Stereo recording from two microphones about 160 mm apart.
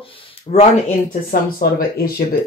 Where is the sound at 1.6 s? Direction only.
65° left (ahead or behind).